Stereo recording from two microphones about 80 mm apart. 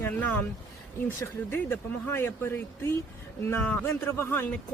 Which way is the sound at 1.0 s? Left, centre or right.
Left.